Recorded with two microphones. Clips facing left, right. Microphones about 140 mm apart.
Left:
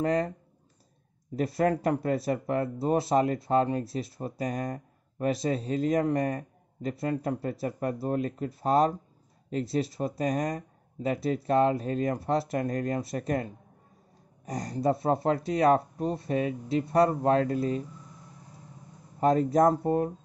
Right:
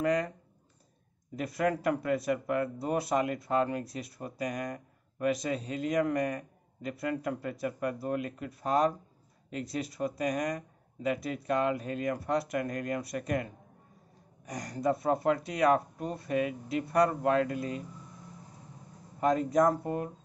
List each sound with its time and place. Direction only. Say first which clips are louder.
0.0 s speech: left 2 dB; 30° left (ahead or behind)
1.3 s speech: left 4 dB; 30° left (ahead or behind)
19.1 s speech: left 3 dB; 35° left (ahead or behind)